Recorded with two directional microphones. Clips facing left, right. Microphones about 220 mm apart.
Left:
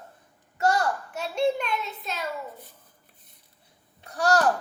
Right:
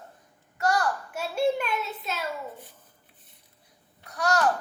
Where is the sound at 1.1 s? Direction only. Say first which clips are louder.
Even; 5° right (ahead or behind).